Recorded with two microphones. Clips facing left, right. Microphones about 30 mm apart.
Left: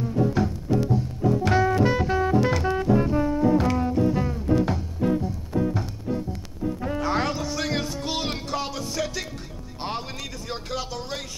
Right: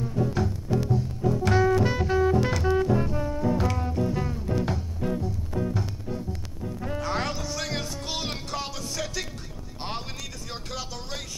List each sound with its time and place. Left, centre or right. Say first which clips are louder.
0.0 s music: left 4 dB; centre